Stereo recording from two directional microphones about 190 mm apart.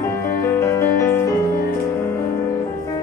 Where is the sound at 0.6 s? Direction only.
15° left (ahead or behind).